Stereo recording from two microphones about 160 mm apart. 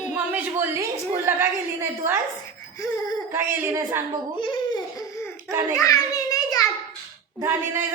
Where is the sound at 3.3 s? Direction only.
15° right (ahead or behind).